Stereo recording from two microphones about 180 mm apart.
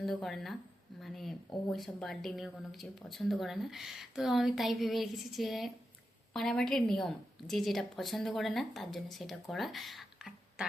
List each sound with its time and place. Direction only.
0.0 s speech: centre (ahead or behind)